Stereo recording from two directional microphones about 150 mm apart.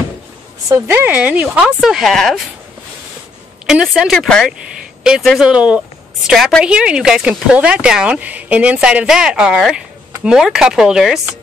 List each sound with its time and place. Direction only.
0.7 s speech: 15° right (ahead or behind); by 2.4 s centre (ahead or behind)
3.6 s speech: centre (ahead or behind)